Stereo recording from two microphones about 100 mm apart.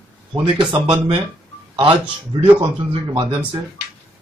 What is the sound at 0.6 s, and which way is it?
Speech, 55° right (ahead or behind).